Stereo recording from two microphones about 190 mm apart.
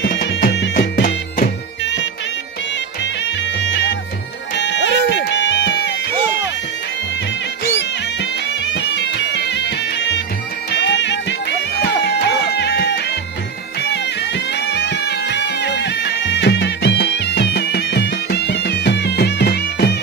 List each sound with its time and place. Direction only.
0.0 s music: 65° left (ahead or behind); by 1.5 s 50° left (ahead or behind)
3.0 s music: 70° left (ahead or behind)
7.7 s music: 70° left (ahead or behind)